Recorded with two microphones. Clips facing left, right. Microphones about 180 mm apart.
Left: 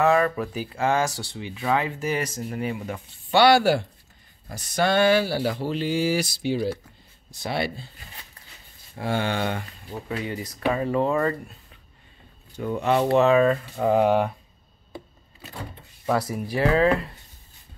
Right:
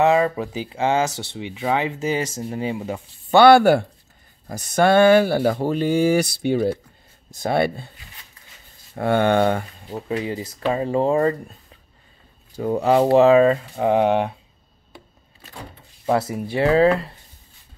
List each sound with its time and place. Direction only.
0.0 s speech: 25° right (ahead or behind)
3.3 s speech: 50° right (ahead or behind)
8.9 s speech: 55° right (ahead or behind)
9.8 s speech: 30° right (ahead or behind)
12.5 s speech: 35° right (ahead or behind)
16.1 s speech: 25° right (ahead or behind)